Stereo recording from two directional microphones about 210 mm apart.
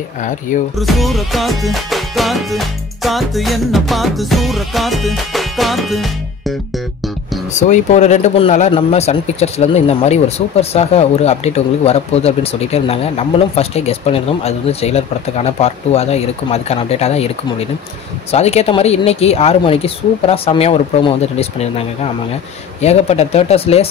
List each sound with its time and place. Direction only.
0.7 s music: centre (ahead or behind)
7.5 s speech: 35° left (ahead or behind)